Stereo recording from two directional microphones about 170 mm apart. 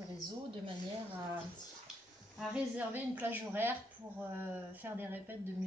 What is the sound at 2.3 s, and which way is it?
Speech, 10° right (ahead or behind).